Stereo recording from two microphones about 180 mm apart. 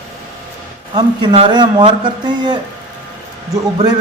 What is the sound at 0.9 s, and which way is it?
Speech, 25° right (ahead or behind).